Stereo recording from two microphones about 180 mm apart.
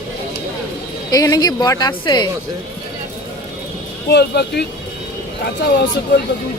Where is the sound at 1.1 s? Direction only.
20° left (ahead or behind).